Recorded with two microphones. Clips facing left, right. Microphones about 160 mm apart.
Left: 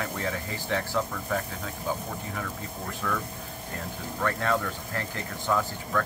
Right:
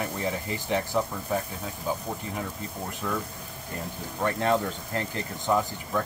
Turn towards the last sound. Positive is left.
turn(degrees=-20)  # may be behind; listen again after turning